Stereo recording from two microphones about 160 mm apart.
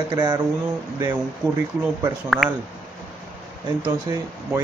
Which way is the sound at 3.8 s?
20° right (ahead or behind).